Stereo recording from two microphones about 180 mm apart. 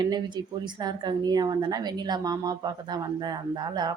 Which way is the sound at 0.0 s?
25° right (ahead or behind).